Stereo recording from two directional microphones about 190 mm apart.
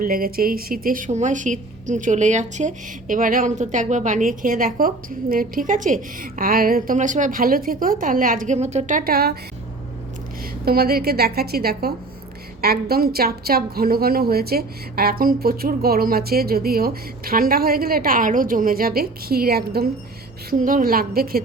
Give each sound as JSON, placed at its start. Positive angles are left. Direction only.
{"t": 0.0, "sound": "a woman's voice", "side_deg": -50}
{"t": 10.7, "sound": "a woman's voice", "side_deg": -55}